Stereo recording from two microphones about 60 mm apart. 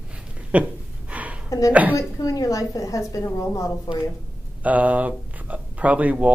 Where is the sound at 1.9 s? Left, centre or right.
Left.